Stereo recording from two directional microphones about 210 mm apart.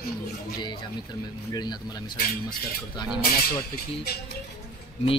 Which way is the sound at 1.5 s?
20° left (ahead or behind).